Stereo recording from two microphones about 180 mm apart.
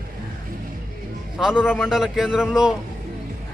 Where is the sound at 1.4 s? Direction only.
5° right (ahead or behind).